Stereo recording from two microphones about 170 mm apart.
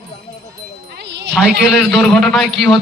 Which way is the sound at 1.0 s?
90° right.